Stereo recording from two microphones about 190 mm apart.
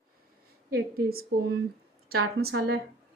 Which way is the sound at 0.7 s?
50° right (ahead or behind).